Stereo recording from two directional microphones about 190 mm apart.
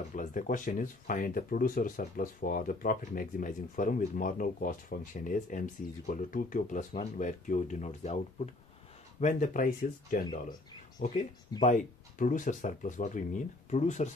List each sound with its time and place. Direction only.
0.1 s speech: 40° left (ahead or behind)